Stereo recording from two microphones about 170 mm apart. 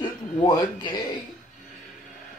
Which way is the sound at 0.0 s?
25° left (ahead or behind).